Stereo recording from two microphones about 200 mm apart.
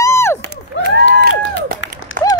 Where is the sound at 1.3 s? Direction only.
70° left (ahead or behind).